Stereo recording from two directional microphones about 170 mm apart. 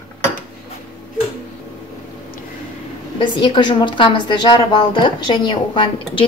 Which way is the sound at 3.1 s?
30° left (ahead or behind).